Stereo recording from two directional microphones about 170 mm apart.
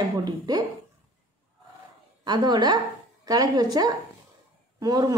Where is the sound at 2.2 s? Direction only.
25° right (ahead or behind).